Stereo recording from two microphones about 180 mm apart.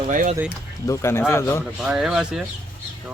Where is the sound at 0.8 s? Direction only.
15° left (ahead or behind).